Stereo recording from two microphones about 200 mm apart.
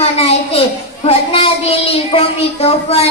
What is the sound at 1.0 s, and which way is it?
A child's voice, 30° left (ahead or behind).